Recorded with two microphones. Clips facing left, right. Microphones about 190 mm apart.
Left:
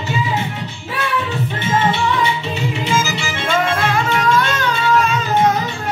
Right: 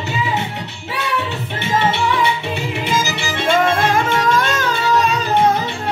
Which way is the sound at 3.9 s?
45° right (ahead or behind).